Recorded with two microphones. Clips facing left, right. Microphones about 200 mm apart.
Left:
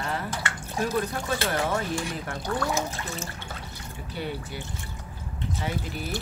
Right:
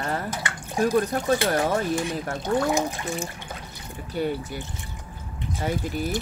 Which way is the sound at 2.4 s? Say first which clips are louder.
Right 5 dB; 20° right (ahead or behind).